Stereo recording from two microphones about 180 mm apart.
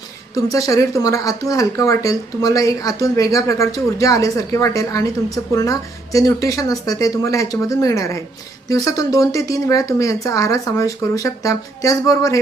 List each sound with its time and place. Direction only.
0.5 s speech: 20° left (ahead or behind)